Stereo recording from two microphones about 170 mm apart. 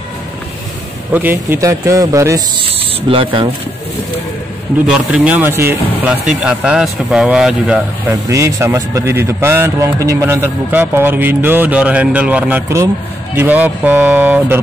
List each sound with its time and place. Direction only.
1.1 s a man's voice: 10° right (ahead or behind)
3.1 s speech: 30° right (ahead or behind)
4.8 s a man's voice: 5° right (ahead or behind)
8.3 s a man's voice: 15° right (ahead or behind)